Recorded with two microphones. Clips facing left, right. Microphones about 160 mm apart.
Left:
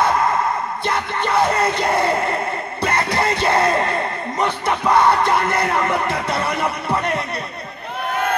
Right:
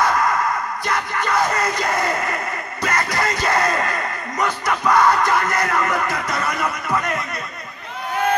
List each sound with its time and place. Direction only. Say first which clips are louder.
0.0 s gasp: left 1 dB; 25° left (ahead or behind)
0.8 s music: left 2 dB; 30° left (ahead or behind)